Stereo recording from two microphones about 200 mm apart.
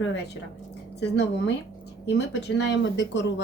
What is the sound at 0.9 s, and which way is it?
Speech, 60° left (ahead or behind).